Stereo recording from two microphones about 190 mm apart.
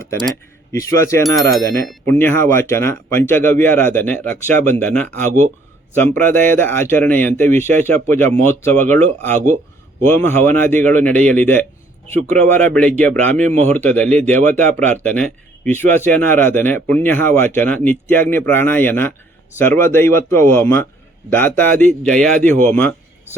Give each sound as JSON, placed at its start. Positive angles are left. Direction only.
{"t": 0.7, "sound": "speech", "side_deg": 15}
{"t": 1.2, "sound": "speech", "side_deg": 0}
{"t": 2.1, "sound": "speech", "side_deg": 10}